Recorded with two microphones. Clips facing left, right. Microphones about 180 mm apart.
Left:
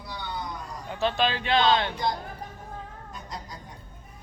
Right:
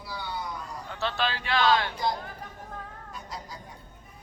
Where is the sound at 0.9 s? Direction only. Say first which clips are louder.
Left 5 dB; 15° left (ahead or behind).